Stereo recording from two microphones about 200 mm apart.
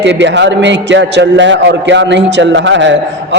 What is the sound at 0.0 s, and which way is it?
A man's voice, 60° right (ahead or behind).